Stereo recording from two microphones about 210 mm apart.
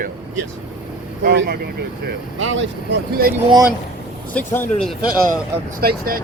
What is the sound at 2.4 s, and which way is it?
Speech, 65° right (ahead or behind).